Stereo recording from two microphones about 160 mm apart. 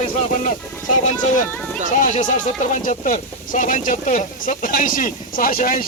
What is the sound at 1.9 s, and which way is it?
Speech, 55° left (ahead or behind).